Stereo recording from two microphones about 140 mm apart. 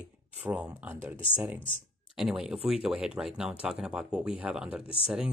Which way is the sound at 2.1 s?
5° right (ahead or behind).